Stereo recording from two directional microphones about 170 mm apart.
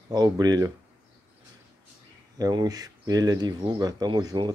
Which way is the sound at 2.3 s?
20° right (ahead or behind).